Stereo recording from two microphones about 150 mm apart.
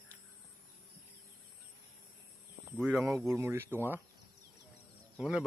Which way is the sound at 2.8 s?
5° right (ahead or behind).